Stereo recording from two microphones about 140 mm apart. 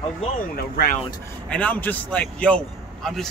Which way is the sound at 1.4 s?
10° left (ahead or behind).